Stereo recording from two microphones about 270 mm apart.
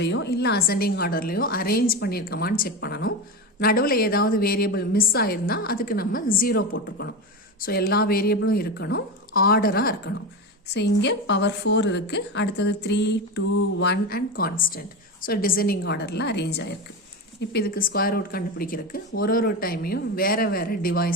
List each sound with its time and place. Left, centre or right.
0.0 s speech: left